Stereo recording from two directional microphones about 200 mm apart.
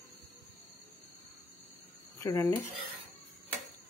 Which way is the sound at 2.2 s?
15° left (ahead or behind).